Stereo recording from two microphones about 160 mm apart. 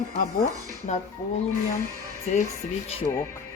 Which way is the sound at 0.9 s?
45° left (ahead or behind).